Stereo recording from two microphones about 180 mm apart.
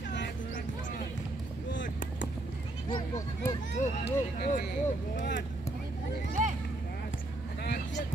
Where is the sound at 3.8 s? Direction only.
45° left (ahead or behind).